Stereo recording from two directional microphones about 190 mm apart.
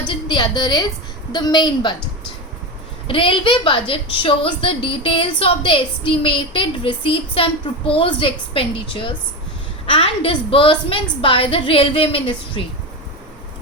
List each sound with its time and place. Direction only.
0.1 s a woman's voice: 25° left (ahead or behind)
3.1 s a woman's voice: 25° left (ahead or behind)